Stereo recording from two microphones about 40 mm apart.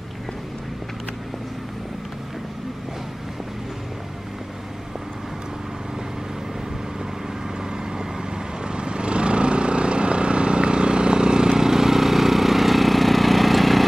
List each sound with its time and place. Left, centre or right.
7.7 s vehicle: centre